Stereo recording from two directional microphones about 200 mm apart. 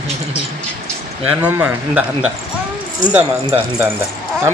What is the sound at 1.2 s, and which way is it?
Speech, 10° right (ahead or behind).